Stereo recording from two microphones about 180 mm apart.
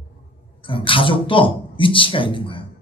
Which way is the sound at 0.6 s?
30° left (ahead or behind).